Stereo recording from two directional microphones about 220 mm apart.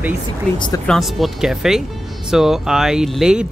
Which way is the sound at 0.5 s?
20° left (ahead or behind).